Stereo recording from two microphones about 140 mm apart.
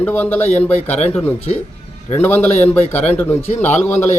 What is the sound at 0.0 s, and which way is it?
A man's voice, 15° left (ahead or behind).